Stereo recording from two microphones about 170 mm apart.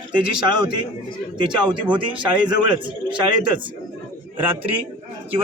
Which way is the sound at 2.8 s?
30° right (ahead or behind).